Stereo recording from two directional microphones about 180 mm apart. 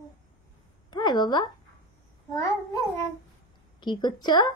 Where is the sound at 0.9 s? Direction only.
25° left (ahead or behind).